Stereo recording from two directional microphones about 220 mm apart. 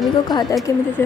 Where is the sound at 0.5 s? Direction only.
15° left (ahead or behind).